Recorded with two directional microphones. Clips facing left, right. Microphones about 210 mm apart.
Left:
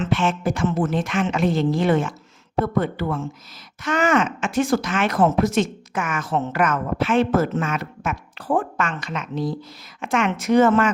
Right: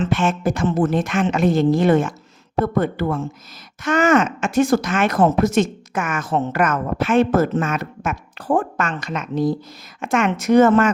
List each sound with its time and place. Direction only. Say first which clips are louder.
0.0 s speech: right 2 dB; 45° right (ahead or behind)